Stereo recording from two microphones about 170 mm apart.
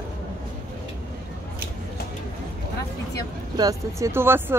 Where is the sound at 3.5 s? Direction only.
20° right (ahead or behind).